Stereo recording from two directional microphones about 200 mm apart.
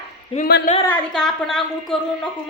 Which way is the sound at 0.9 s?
5° left (ahead or behind).